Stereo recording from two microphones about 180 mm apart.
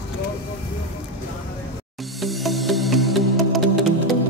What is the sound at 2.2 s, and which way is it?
Music, centre (ahead or behind).